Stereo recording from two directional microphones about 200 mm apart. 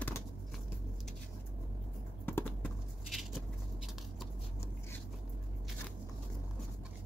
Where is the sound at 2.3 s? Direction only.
10° left (ahead or behind).